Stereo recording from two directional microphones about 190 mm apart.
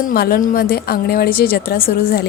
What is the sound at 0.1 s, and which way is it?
A woman's voice, 50° left (ahead or behind).